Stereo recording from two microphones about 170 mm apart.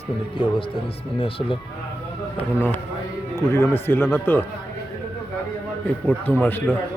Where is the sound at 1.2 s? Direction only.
35° left (ahead or behind).